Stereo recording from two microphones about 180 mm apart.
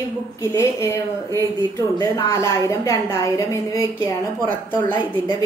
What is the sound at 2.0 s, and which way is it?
A woman's voice, 20° left (ahead or behind).